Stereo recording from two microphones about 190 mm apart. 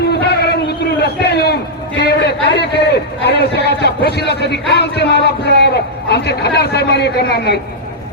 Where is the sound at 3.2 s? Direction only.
60° left (ahead or behind).